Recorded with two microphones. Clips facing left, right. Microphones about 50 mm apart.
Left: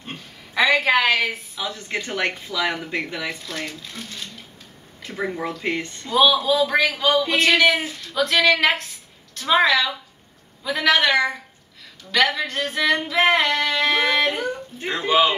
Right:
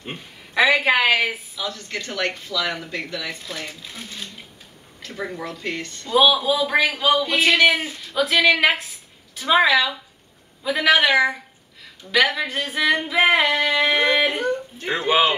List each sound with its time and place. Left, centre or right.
0.6 s a woman's voice: centre
1.6 s speech: left
3.6 s a woman's voice: centre
5.0 s speech: centre
6.1 s a woman's voice: centre
14.9 s speech: centre